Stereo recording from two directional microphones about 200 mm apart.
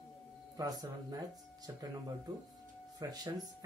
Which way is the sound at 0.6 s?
20° right (ahead or behind).